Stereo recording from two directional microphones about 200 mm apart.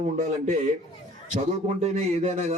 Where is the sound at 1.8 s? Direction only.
35° right (ahead or behind).